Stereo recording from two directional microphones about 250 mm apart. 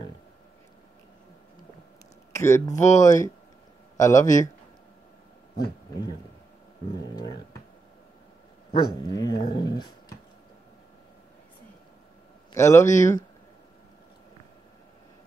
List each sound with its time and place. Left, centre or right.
2.3 s a man's voice: centre
8.7 s speech: centre
12.5 s speech: centre